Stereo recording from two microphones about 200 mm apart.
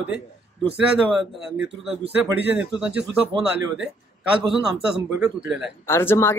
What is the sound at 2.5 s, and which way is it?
Speech, 5° right (ahead or behind).